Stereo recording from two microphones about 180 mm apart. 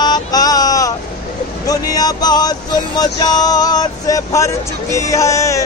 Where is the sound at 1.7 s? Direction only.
20° left (ahead or behind).